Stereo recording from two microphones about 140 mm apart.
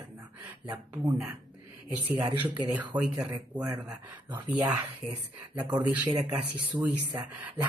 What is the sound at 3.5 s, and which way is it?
Speech, 30° right (ahead or behind).